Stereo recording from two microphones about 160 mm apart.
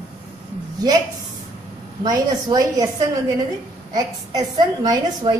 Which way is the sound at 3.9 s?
25° right (ahead or behind).